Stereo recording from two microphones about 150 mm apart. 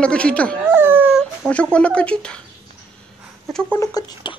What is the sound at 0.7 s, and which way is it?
Dog, 15° right (ahead or behind).